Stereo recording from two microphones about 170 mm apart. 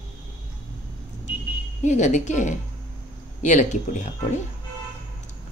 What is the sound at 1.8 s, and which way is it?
Speech, 45° left (ahead or behind).